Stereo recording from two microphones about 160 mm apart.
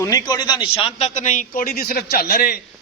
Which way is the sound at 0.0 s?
20° left (ahead or behind).